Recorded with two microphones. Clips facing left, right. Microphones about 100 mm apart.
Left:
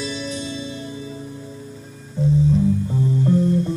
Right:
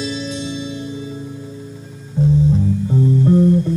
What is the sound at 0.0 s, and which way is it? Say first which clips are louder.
Music: right 3 dB; 90° right.